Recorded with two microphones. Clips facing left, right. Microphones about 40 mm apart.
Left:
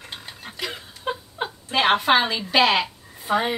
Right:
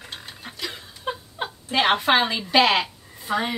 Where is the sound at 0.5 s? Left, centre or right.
Centre.